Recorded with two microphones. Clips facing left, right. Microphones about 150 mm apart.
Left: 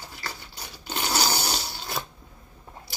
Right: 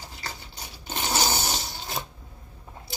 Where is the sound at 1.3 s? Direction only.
20° right (ahead or behind).